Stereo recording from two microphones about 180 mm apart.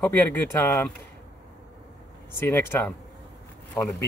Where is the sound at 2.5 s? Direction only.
10° left (ahead or behind).